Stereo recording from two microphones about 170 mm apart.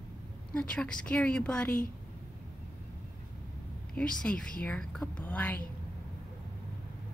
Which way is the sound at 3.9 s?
5° left (ahead or behind).